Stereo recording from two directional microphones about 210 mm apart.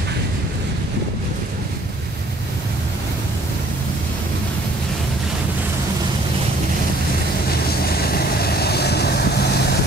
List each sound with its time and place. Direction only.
8.0 s vehicle: 45° left (ahead or behind)